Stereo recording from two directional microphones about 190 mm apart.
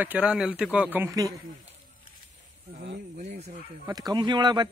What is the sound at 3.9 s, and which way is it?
Speech, 20° right (ahead or behind).